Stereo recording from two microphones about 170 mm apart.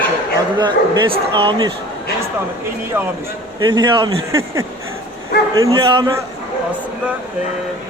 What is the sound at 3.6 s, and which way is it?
Speech, 25° right (ahead or behind).